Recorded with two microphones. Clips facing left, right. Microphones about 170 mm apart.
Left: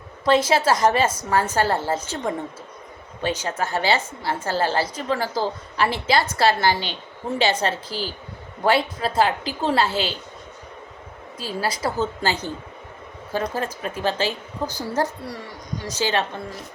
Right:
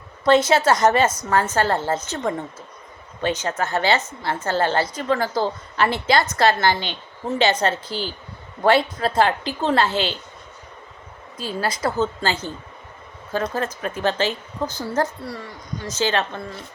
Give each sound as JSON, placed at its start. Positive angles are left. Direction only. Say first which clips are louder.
{"t": 0.3, "sound": "a woman's voice", "louder": "right 2 dB", "side_deg": 30}
{"t": 0.7, "sound": "a woman's voice", "louder": "right 2 dB", "side_deg": 10}
{"t": 11.3, "sound": "a woman's voice", "louder": "right 1 dB", "side_deg": 5}